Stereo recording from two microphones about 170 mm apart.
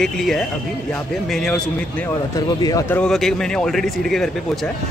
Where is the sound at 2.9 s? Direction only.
5° left (ahead or behind).